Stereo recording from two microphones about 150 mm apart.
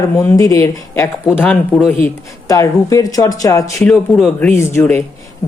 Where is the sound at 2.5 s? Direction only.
20° left (ahead or behind).